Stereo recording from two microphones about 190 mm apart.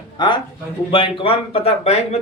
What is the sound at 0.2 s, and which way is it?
A man's voice, 25° left (ahead or behind).